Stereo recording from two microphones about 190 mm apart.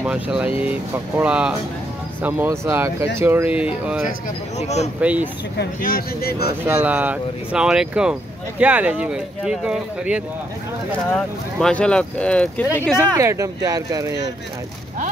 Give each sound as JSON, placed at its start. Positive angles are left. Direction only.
{"t": 0.0, "sound": "speech", "side_deg": -5}
{"t": 4.6, "sound": "speech", "side_deg": 35}
{"t": 5.0, "sound": "speech", "side_deg": -10}
{"t": 5.6, "sound": "speech", "side_deg": 50}
{"t": 6.6, "sound": "speech", "side_deg": -10}
{"t": 11.1, "sound": "speech", "side_deg": 5}
{"t": 12.9, "sound": "speech", "side_deg": -15}